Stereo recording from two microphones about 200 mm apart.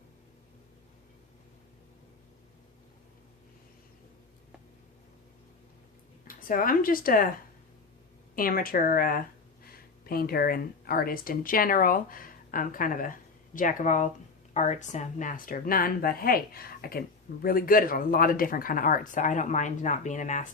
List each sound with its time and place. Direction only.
6.2 s speech: 45° left (ahead or behind)
8.4 s speech: 45° left (ahead or behind)